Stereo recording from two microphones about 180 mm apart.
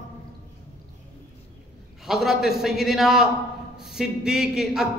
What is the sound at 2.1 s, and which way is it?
Speech, centre (ahead or behind).